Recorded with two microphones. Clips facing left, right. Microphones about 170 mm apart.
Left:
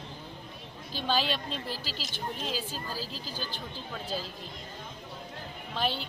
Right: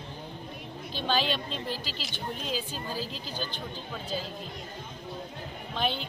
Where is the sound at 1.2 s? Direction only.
40° left (ahead or behind).